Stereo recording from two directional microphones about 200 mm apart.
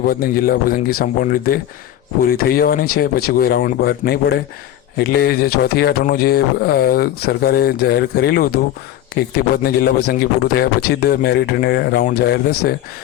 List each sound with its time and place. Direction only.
0.0 s speech: 45° left (ahead or behind)